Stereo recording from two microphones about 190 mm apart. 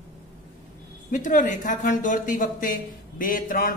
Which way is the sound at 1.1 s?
40° left (ahead or behind).